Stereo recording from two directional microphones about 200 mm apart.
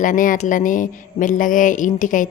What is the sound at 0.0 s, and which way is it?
Speech, 40° left (ahead or behind).